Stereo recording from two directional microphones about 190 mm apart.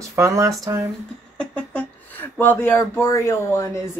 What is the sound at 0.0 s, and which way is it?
Speech, 15° right (ahead or behind).